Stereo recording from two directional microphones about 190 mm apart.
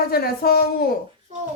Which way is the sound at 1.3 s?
35° right (ahead or behind).